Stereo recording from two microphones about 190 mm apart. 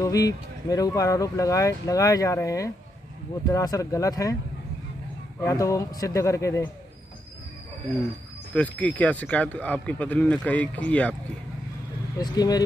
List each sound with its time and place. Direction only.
0.0 s speech: 20° left (ahead or behind)
5.4 s speech: 15° left (ahead or behind)
8.5 s speech: 10° left (ahead or behind)
12.2 s speech: 20° left (ahead or behind)